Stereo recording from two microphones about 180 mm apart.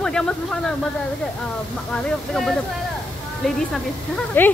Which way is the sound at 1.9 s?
Centre (ahead or behind).